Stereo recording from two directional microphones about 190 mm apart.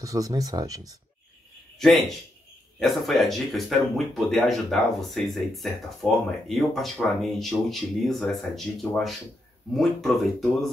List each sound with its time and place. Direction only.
0.0 s speech: 20° right (ahead or behind)
1.8 s speech: centre (ahead or behind)